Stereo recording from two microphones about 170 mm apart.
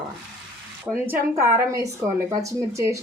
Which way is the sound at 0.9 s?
Centre (ahead or behind).